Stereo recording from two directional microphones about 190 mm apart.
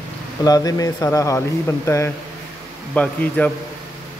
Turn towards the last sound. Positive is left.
turn(degrees=5)  # may be behind; listen again after turning